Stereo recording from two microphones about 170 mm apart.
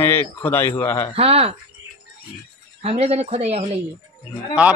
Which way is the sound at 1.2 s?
35° right (ahead or behind).